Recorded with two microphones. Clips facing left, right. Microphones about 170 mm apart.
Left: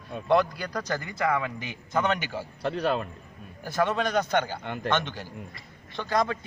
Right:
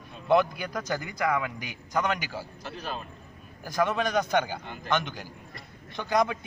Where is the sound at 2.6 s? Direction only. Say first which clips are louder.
Left 13 dB; 65° left (ahead or behind).